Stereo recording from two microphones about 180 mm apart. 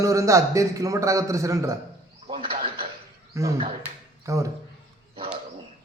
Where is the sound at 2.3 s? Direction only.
30° right (ahead or behind).